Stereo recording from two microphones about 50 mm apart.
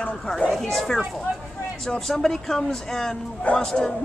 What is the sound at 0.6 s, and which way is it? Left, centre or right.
Speech, centre.